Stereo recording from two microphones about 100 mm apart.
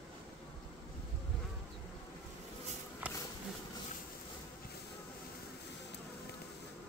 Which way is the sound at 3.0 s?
15° right (ahead or behind).